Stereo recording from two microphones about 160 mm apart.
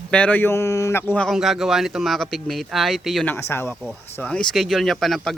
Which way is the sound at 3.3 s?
15° left (ahead or behind).